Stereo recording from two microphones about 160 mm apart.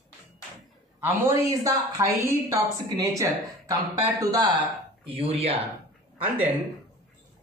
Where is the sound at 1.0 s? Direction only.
20° right (ahead or behind).